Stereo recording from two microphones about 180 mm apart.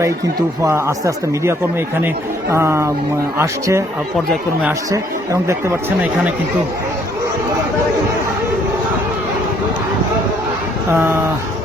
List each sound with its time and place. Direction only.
0.6 s speech: 15° right (ahead or behind)
4.9 s speech: 15° right (ahead or behind)
10.9 s speech: 15° right (ahead or behind)